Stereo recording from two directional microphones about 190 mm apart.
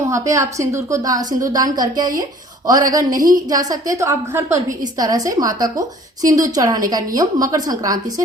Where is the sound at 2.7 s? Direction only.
20° right (ahead or behind).